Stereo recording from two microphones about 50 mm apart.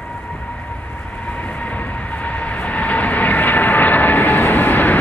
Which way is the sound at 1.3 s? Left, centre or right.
Left.